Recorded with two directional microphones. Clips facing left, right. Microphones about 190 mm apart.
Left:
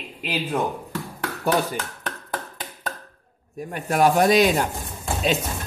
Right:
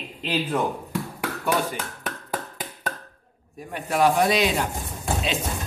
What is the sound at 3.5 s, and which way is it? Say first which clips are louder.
Speech: left 2 dB; 45° left (ahead or behind).